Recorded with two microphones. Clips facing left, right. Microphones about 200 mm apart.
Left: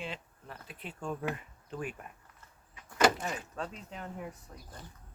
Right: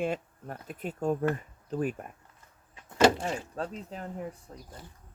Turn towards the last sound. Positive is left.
turn(degrees=-30)  # may be behind; listen again after turning